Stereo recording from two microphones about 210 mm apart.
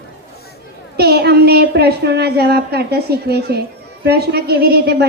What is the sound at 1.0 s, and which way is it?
A woman's voice, 50° right (ahead or behind).